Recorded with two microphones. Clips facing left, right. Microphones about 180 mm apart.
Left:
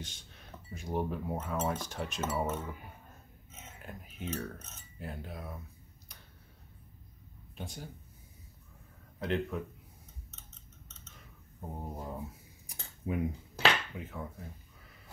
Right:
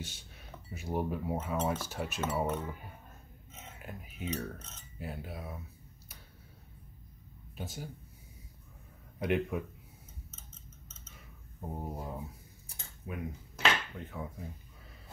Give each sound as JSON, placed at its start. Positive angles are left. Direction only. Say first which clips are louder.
{"t": 0.0, "sound": "speech", "louder": "right 2 dB", "side_deg": -10}
{"t": 3.6, "sound": "typing", "louder": "right 1 dB", "side_deg": -5}
{"t": 4.9, "sound": "speech", "louder": "right 1 dB", "side_deg": -5}
{"t": 7.5, "sound": "speech", "louder": "right 2 dB", "side_deg": -5}
{"t": 9.2, "sound": "speech", "louder": "right 2 dB", "side_deg": -15}
{"t": 10.3, "sound": "a sound", "louder": "right 2 dB", "side_deg": 0}
{"t": 11.6, "sound": "speech", "louder": "right 1 dB", "side_deg": -5}
{"t": 12.6, "sound": "cutlery", "louder": "left 7 dB", "side_deg": 25}
{"t": 13.9, "sound": "speech", "louder": "even", "side_deg": 0}